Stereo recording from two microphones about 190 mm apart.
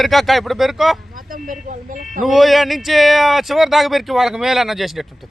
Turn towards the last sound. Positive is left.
turn(degrees=0)  # may be behind; listen again after turning